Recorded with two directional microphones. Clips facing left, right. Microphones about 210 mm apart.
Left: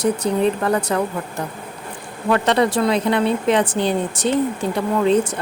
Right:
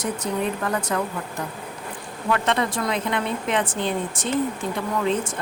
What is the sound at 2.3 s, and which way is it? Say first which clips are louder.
Speech: left 6 dB; 35° left (ahead or behind).